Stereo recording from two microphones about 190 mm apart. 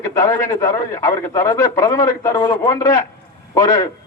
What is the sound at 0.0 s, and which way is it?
A man's voice, 15° left (ahead or behind).